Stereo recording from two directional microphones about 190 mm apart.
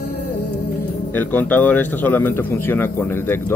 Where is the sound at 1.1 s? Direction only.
10° left (ahead or behind).